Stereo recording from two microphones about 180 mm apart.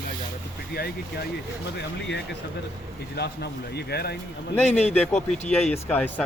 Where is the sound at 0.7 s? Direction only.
60° left (ahead or behind).